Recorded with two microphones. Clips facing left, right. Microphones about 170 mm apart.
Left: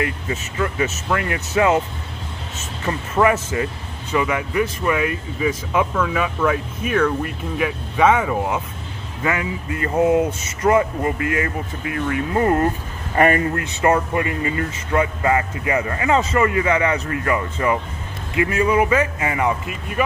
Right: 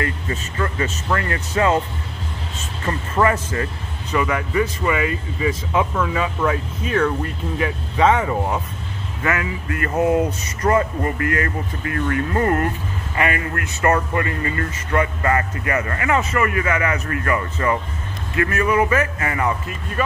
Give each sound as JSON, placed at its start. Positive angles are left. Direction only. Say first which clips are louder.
{"t": 0.0, "sound": "speech", "louder": "left 1 dB", "side_deg": 15}
{"t": 2.8, "sound": "speech", "louder": "left 1 dB", "side_deg": 10}
{"t": 9.2, "sound": "speech", "louder": "left 1 dB", "side_deg": 20}
{"t": 13.1, "sound": "speech", "louder": "left 6 dB", "side_deg": 40}
{"t": 13.6, "sound": "speech", "louder": "left 1 dB", "side_deg": 15}